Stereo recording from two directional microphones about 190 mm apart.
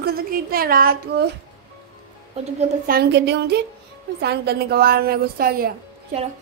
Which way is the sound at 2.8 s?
55° right (ahead or behind).